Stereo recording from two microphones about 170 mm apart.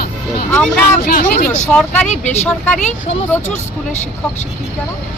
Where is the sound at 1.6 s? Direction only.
5° left (ahead or behind).